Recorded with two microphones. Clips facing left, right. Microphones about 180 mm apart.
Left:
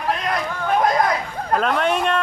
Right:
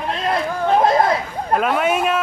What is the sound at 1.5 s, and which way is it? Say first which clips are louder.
Speech: right 2 dB; 10° right (ahead or behind).